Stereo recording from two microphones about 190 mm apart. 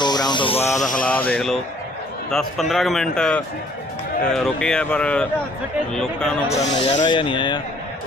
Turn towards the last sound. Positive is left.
turn(degrees=25)  # may be behind; listen again after turning